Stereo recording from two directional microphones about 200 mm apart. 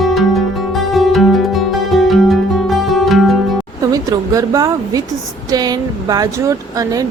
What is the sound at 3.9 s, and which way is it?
A woman's voice, 15° right (ahead or behind).